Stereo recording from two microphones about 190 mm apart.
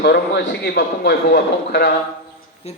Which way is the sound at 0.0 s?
65° left (ahead or behind).